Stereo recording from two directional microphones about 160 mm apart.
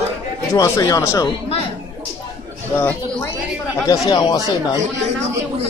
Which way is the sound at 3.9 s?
25° left (ahead or behind).